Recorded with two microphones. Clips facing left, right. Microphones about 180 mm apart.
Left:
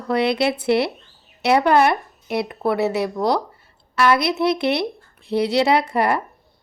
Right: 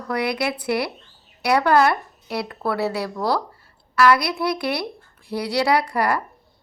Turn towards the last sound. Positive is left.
turn(degrees=25)  # may be behind; listen again after turning